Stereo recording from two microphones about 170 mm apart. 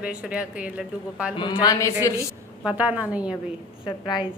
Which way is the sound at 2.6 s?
10° right (ahead or behind).